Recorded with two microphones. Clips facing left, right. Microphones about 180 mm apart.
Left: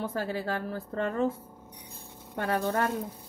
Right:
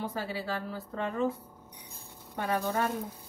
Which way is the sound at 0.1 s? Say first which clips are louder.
Left 3 dB; 50° left (ahead or behind).